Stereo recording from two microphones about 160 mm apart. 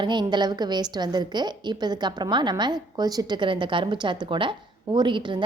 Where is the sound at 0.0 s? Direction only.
30° right (ahead or behind).